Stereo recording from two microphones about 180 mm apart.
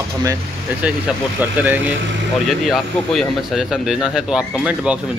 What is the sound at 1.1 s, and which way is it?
Speech, 5° right (ahead or behind).